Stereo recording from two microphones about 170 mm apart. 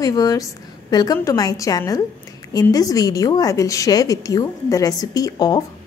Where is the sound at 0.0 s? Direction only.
20° left (ahead or behind).